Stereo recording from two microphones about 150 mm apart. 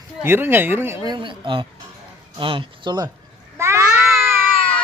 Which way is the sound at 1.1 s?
30° right (ahead or behind).